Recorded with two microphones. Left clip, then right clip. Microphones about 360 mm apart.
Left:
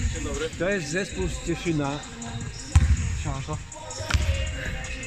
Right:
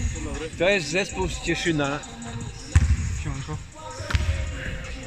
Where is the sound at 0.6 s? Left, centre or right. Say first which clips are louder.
Right 7 dB; right.